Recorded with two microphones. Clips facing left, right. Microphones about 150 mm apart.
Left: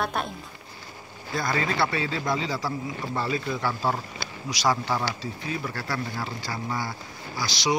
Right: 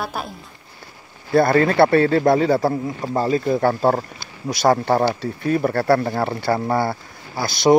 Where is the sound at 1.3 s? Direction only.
60° right (ahead or behind).